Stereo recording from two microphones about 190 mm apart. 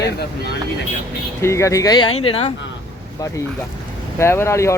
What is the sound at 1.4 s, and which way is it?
Speech, 15° left (ahead or behind).